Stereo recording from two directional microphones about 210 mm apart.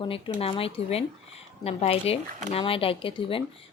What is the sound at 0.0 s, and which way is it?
Speech, 25° left (ahead or behind).